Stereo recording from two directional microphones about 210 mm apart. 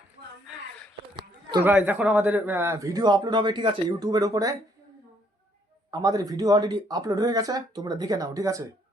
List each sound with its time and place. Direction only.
1.1 s a sound: 20° right (ahead or behind)
1.6 s a man's voice: 10° right (ahead or behind)
5.9 s a man's voice: 15° right (ahead or behind)